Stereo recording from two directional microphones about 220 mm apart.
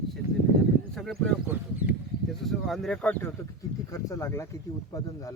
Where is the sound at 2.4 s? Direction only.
Centre (ahead or behind).